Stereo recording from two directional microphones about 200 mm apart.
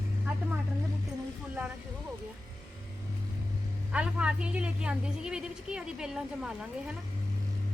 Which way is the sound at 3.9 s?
5° right (ahead or behind).